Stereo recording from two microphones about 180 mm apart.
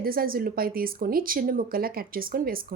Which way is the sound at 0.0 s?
55° right (ahead or behind).